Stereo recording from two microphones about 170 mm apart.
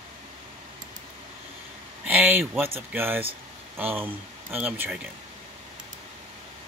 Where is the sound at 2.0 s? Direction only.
10° right (ahead or behind).